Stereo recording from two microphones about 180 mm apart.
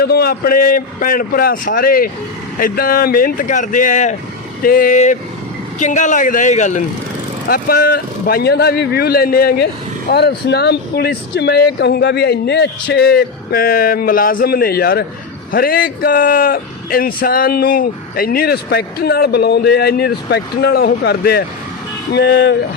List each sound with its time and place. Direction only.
0.0 s speech: 60° left (ahead or behind); by 6.8 s 40° left (ahead or behind)
7.4 s speech: 55° left (ahead or behind)